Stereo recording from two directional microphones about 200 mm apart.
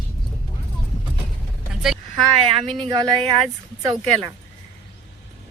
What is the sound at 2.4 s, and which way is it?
Speech, 30° right (ahead or behind).